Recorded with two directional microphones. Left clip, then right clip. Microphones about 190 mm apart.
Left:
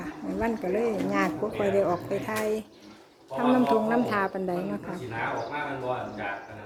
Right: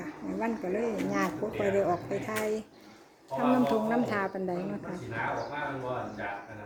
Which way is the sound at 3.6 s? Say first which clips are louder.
Left 4 dB; 5° left (ahead or behind).